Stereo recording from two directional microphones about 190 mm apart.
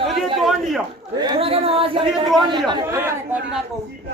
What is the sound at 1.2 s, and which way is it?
Speech, 25° right (ahead or behind).